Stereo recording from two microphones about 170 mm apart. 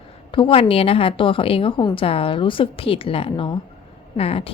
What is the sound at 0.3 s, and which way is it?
A woman's voice, 30° left (ahead or behind).